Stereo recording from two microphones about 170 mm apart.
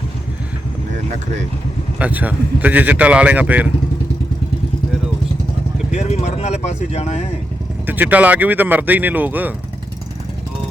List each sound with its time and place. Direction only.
2.0 s speech: 10° right (ahead or behind)
5.9 s speech: 40° left (ahead or behind)
7.9 s speech: 10° right (ahead or behind)